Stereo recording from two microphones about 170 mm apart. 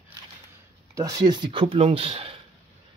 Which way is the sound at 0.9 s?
20° right (ahead or behind).